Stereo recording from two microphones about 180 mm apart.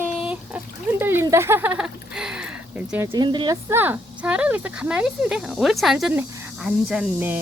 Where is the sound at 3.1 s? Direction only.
25° right (ahead or behind).